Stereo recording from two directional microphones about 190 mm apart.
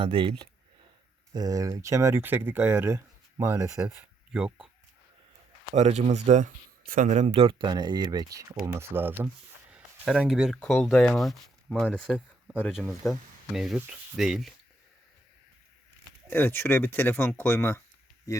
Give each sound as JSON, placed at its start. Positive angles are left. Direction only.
{"t": 0.0, "sound": "speech", "side_deg": -30}
{"t": 5.7, "sound": "speech", "side_deg": -35}
{"t": 16.3, "sound": "speech", "side_deg": 10}